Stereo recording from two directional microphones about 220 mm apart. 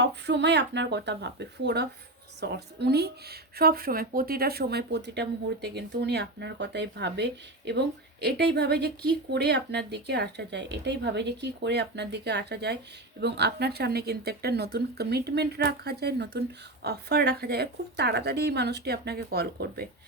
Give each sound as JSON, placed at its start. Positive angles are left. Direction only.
{"t": 0.0, "sound": "a woman's voice", "side_deg": -50}